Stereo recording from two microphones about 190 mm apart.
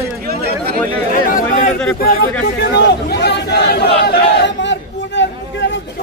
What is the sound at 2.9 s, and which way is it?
Speech, 60° left (ahead or behind).